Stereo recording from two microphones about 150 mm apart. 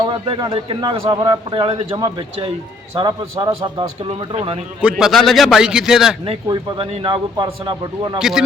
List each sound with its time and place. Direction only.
0.0 s a man's voice: 30° right (ahead or behind)
4.8 s a man's voice: 5° right (ahead or behind)
6.2 s a man's voice: 35° right (ahead or behind)
8.2 s a man's voice: 5° right (ahead or behind)